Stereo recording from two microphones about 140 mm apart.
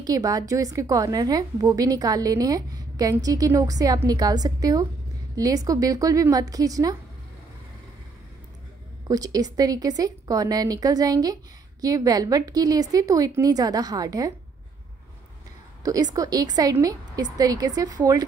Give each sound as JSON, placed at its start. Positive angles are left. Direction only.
{"t": 0.0, "sound": "a woman's voice", "side_deg": -25}
{"t": 9.0, "sound": "a woman's voice", "side_deg": -25}
{"t": 15.8, "sound": "a woman's voice", "side_deg": -25}